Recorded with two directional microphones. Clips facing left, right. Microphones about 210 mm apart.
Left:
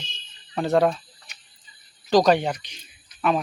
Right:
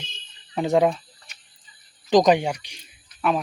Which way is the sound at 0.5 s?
15° right (ahead or behind).